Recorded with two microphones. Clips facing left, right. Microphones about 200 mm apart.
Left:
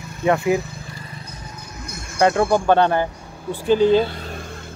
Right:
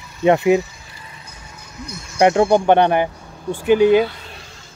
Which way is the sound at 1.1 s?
35° left (ahead or behind).